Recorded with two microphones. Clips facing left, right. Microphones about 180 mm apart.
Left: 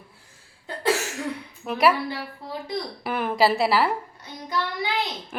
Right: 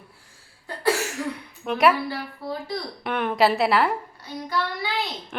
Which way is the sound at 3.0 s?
5° left (ahead or behind).